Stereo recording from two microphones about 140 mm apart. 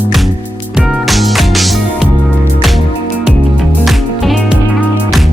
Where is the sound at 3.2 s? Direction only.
Centre (ahead or behind).